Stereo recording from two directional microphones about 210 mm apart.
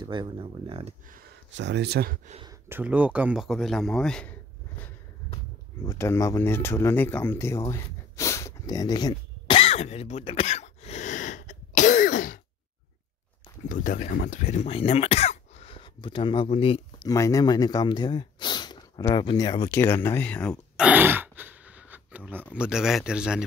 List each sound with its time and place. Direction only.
0.0 s speech: 20° right (ahead or behind)
1.0 s speech: 40° right (ahead or behind)
1.5 s speech: 55° right (ahead or behind)
2.7 s a man's voice: 5° right (ahead or behind)
5.9 s a sound: 15° left (ahead or behind); by 12.4 s 40° left (ahead or behind)
13.7 s speech: 40° left (ahead or behind)
17.1 s a man's voice: 15° left (ahead or behind); by 23.4 s 5° right (ahead or behind)